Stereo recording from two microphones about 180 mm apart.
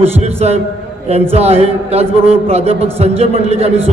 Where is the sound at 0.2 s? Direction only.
35° right (ahead or behind).